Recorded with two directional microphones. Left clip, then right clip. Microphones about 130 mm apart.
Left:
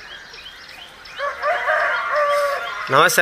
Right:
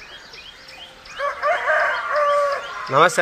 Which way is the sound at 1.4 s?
30° left (ahead or behind).